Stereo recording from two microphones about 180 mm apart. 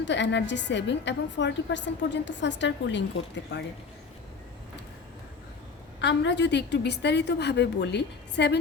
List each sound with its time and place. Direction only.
0.0 s a woman's voice: 80° left
6.0 s a woman's voice: 75° left (ahead or behind)